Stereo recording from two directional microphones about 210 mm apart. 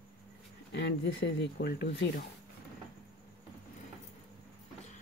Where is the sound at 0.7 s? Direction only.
55° left (ahead or behind).